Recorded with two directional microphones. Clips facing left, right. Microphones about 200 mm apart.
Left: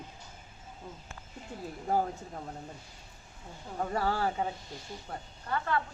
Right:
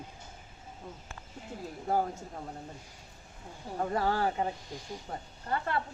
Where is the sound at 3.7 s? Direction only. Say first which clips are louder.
Right 1 dB; 10° right (ahead or behind).